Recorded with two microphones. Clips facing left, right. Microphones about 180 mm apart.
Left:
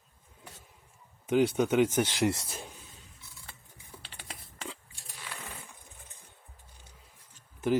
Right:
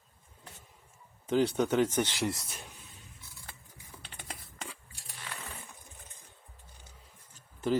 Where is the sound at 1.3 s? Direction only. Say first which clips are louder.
Left 2 dB; 5° left (ahead or behind).